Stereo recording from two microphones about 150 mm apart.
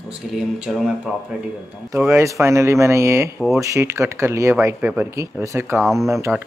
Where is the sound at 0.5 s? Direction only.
5° right (ahead or behind).